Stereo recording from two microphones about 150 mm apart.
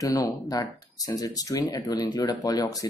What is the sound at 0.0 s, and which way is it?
Speech, 25° left (ahead or behind).